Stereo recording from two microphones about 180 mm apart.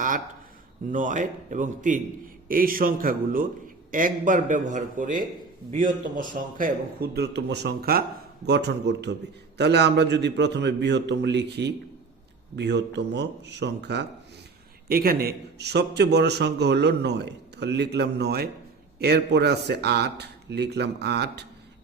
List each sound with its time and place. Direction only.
0.9 s a man's voice: 45° right (ahead or behind)
8.4 s a man's voice: 70° right (ahead or behind)
14.8 s a man's voice: 55° right (ahead or behind)